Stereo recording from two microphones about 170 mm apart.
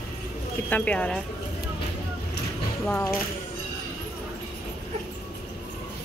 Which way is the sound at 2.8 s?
10° left (ahead or behind).